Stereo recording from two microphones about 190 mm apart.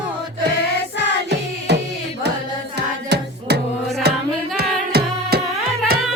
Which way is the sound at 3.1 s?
60° right (ahead or behind).